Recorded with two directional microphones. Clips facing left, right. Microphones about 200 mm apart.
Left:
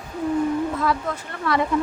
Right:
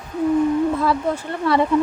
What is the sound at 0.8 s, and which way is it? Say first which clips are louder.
Speech: right 4 dB; 30° right (ahead or behind).